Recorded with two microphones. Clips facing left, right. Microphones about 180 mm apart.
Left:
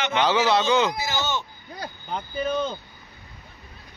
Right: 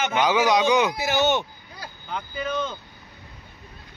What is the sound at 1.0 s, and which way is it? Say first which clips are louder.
Speech: right 6 dB; 65° right (ahead or behind).